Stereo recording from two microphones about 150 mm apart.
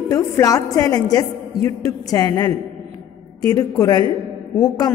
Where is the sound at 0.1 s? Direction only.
20° left (ahead or behind).